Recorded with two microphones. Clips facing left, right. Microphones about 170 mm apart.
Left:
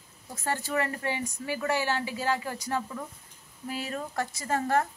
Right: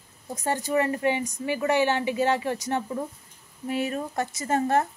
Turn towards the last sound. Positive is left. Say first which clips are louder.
# right 3 dB
turn(degrees=-20)  # may be behind; listen again after turning